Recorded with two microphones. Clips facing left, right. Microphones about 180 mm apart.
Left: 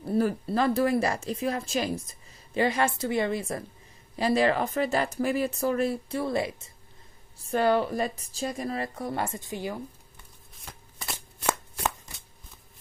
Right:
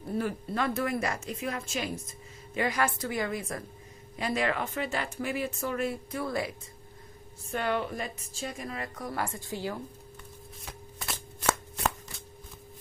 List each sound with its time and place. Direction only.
0.1 s a woman's voice: 35° left (ahead or behind)
7.5 s speech: 35° left (ahead or behind); by 9.8 s 15° left (ahead or behind)
10.6 s shuffling cards: centre (ahead or behind)